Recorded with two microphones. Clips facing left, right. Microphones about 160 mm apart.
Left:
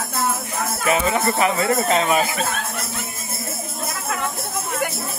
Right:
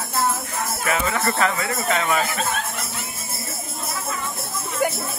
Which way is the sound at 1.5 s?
30° left (ahead or behind).